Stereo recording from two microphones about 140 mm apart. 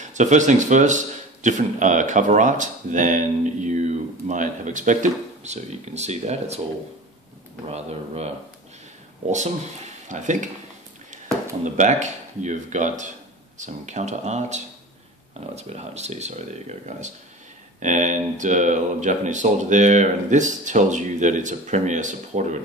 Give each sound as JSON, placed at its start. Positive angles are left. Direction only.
{"t": 0.0, "sound": "a man's voice", "side_deg": -60}
{"t": 7.6, "sound": "speech", "side_deg": -45}
{"t": 9.3, "sound": "a man's voice", "side_deg": -55}
{"t": 11.6, "sound": "a man's voice", "side_deg": -60}